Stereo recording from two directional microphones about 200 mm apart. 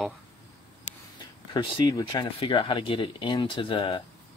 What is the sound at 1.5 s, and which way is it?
Speech, 20° left (ahead or behind).